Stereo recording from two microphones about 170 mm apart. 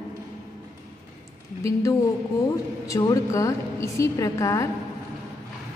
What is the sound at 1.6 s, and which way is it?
A woman's voice, 20° left (ahead or behind).